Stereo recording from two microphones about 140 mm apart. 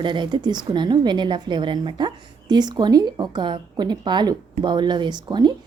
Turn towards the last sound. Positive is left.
turn(degrees=-30)  # may be behind; listen again after turning